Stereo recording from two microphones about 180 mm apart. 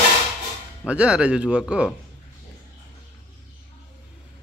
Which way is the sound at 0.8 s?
5° right (ahead or behind).